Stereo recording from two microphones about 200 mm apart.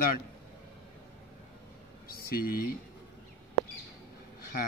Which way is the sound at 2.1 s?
50° left (ahead or behind).